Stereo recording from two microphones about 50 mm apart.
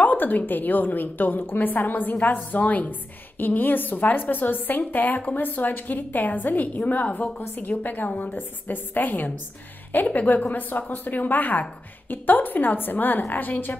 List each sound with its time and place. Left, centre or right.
0.0 s a woman's voice: left